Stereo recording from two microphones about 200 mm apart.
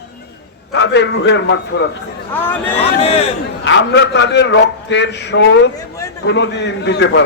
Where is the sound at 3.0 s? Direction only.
30° left (ahead or behind).